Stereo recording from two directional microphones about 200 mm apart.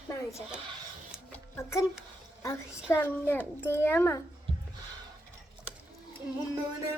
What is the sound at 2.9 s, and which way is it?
A child's voice, 10° left (ahead or behind).